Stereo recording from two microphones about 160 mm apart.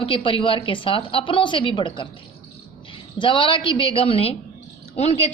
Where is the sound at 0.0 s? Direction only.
35° left (ahead or behind).